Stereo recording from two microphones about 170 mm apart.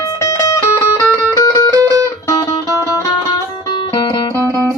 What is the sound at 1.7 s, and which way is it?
Music, 20° right (ahead or behind).